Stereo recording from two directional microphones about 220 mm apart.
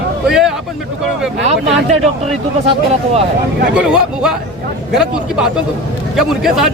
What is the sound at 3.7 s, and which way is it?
Speech, 5° right (ahead or behind).